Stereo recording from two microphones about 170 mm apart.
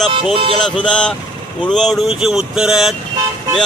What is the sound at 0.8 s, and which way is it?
Speech, 5° left (ahead or behind).